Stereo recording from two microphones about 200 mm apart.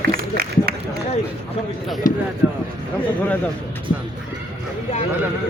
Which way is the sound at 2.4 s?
10° right (ahead or behind).